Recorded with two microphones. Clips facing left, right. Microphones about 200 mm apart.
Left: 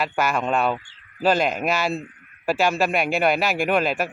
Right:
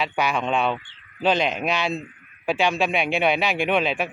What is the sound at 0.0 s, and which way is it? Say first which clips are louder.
Speech: left 1 dB; 5° left (ahead or behind).